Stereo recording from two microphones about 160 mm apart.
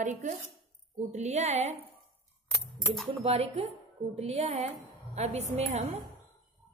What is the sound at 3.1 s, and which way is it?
Speech, 40° right (ahead or behind).